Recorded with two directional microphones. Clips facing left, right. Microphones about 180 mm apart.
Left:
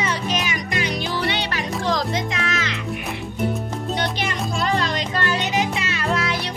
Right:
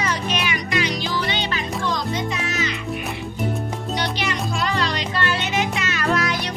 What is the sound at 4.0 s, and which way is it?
Music, 50° left (ahead or behind).